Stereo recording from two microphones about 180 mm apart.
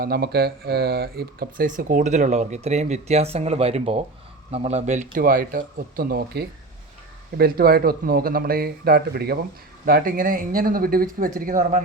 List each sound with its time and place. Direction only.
0.0 s speech: 60° right (ahead or behind)